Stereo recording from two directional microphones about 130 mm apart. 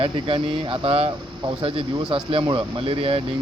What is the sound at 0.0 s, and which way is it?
Speech, 45° right (ahead or behind).